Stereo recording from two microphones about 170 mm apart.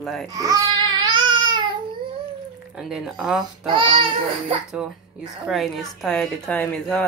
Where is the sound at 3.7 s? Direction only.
30° right (ahead or behind).